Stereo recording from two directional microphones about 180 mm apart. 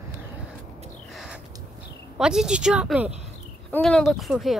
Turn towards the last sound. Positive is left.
turn(degrees=0)  # may be behind; listen again after turning